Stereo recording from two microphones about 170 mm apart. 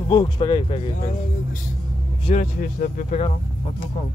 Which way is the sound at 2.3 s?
50° left (ahead or behind).